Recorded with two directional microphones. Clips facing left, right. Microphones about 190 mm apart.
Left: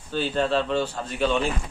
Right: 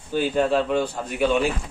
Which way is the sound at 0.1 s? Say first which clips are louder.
Right 3 dB; 10° right (ahead or behind).